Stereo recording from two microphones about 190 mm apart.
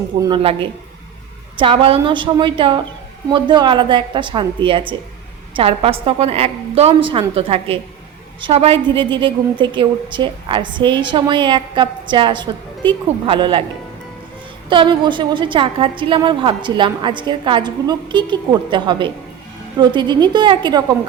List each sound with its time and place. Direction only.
0.2 s a woman's voice: 25° right (ahead or behind)
14.7 s a woman's voice: 25° right (ahead or behind)